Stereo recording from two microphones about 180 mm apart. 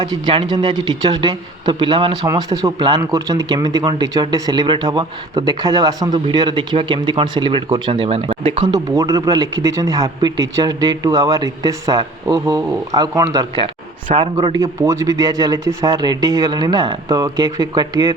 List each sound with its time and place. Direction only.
0.0 s speech: 25° right (ahead or behind)